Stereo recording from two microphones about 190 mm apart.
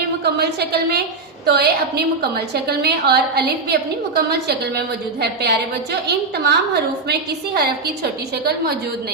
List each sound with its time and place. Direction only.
0.3 s a woman's voice: 60° right (ahead or behind)